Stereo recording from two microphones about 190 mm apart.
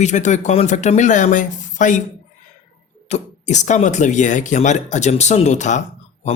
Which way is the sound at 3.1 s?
35° left (ahead or behind).